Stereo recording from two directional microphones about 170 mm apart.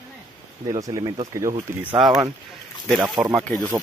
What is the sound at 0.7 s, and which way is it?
Speech, 20° right (ahead or behind).